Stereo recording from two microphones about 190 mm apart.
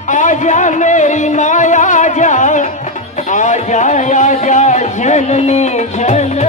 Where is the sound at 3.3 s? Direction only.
40° left (ahead or behind).